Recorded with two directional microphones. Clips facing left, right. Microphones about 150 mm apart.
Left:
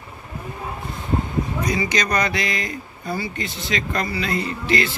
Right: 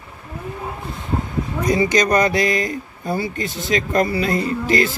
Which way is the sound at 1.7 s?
45° right (ahead or behind).